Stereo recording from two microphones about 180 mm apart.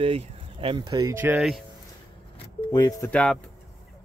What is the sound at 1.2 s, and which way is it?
Speech, 10° right (ahead or behind).